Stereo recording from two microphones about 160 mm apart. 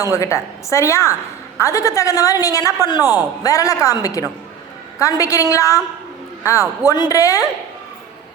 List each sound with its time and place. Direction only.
0.1 s a woman's voice: 20° left (ahead or behind)